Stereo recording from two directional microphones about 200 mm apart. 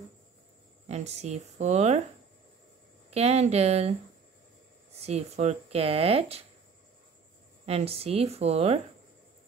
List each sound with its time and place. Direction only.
0.8 s speech: 35° right (ahead or behind)
3.1 s speech: 30° right (ahead or behind)
5.0 s speech: 35° right (ahead or behind)
7.6 s speech: 30° right (ahead or behind)